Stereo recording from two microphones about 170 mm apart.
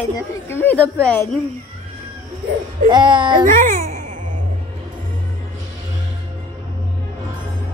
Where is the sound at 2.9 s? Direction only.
25° right (ahead or behind).